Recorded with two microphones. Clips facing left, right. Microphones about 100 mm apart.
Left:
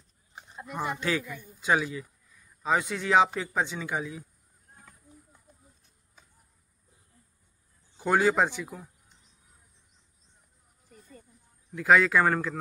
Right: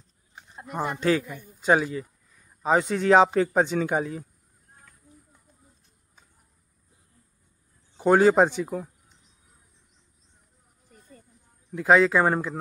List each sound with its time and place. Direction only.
0.7 s speech: 40° right (ahead or behind)
8.0 s speech: 35° right (ahead or behind)
11.7 s speech: 25° right (ahead or behind)